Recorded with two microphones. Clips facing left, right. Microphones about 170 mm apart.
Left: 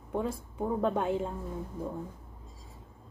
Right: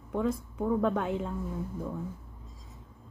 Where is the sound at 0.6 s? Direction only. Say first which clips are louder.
Right 2 dB; 15° left (ahead or behind).